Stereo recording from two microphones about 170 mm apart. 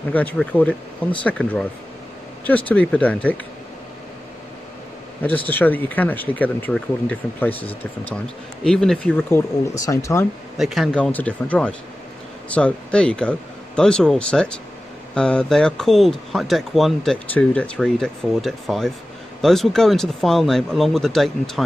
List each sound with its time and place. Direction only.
0.1 s speech: 10° left (ahead or behind)
5.2 s speech: 10° left (ahead or behind)
9.8 s speech: 20° left (ahead or behind)
10.6 s speech: centre (ahead or behind)